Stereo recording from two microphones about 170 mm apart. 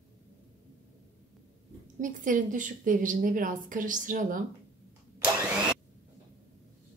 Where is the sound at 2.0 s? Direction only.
50° right (ahead or behind).